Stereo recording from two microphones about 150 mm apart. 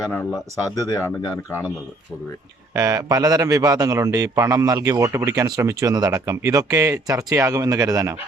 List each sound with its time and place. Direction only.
0.8 s speech: 25° left (ahead or behind)
2.7 s a man's voice: 25° right (ahead or behind)